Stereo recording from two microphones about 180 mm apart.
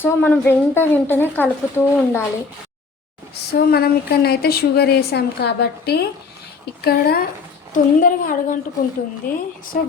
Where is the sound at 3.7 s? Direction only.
60° left (ahead or behind).